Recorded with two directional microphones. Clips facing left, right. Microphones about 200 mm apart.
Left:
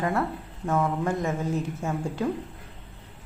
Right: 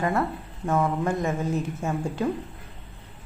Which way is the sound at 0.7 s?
20° right (ahead or behind).